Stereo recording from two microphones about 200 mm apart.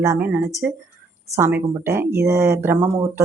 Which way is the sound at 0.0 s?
10° right (ahead or behind).